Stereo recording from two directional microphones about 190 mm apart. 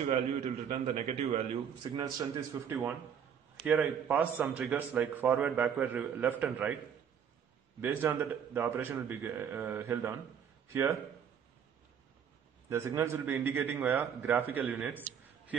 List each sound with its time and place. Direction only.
0.0 s a man's voice: 35° right (ahead or behind); by 6.3 s 10° right (ahead or behind)
7.8 s a man's voice: 10° right (ahead or behind)
12.6 s a man's voice: 15° right (ahead or behind)